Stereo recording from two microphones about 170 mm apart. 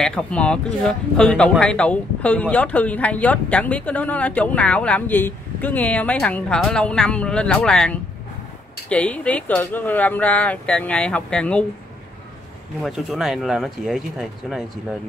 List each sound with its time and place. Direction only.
0.0 s speech: 5° left (ahead or behind)
12.8 s speech: centre (ahead or behind)